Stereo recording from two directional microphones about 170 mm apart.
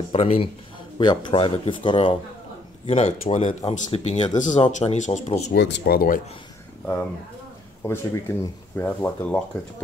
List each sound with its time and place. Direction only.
0.1 s speech: 35° left (ahead or behind)
5.5 s speech: 70° left (ahead or behind)
7.8 s speech: 15° left (ahead or behind)